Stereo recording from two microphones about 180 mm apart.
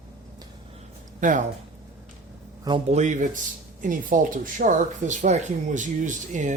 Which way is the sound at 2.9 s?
40° right (ahead or behind).